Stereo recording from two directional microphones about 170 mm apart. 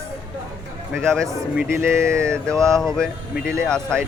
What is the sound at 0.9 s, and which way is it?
Speech, 5° left (ahead or behind).